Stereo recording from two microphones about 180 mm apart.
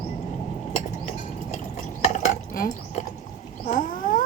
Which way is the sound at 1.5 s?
40° left (ahead or behind).